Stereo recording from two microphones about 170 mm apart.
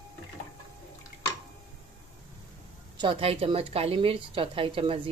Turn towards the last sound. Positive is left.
turn(degrees=-30)  # may be behind; listen again after turning